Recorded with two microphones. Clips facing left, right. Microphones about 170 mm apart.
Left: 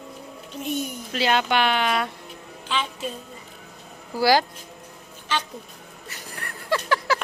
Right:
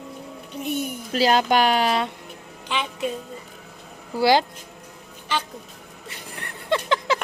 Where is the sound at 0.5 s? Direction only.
15° right (ahead or behind).